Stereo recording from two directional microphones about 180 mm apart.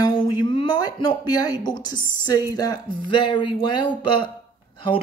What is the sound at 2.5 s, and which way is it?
Speech, 20° left (ahead or behind).